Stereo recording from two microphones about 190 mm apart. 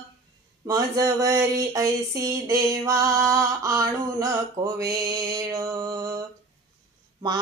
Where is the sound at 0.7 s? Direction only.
20° right (ahead or behind).